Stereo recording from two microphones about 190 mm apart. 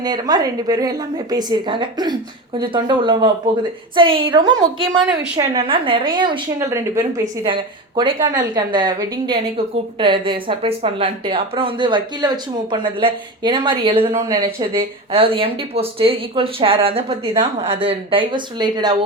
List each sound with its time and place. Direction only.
0.0 s speech: 20° right (ahead or behind)
14.1 s speech: 15° right (ahead or behind)
15.1 s speech: 30° right (ahead or behind)